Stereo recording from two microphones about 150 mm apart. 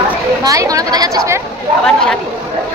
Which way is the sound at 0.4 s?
25° right (ahead or behind).